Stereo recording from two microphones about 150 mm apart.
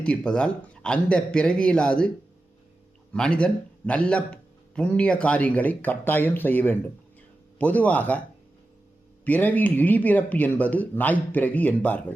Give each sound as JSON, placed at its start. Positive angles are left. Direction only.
{"t": 0.0, "sound": "speech", "side_deg": 5}
{"t": 9.2, "sound": "speech", "side_deg": 10}